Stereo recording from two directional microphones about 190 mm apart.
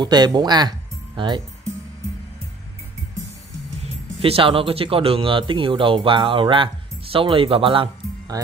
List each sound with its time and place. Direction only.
0.0 s speech: 20° right (ahead or behind)
3.8 s speech: 30° right (ahead or behind)